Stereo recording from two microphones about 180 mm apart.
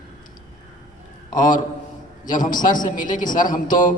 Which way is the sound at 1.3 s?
45° left (ahead or behind).